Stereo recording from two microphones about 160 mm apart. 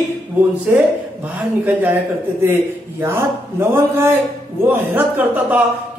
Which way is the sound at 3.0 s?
15° right (ahead or behind).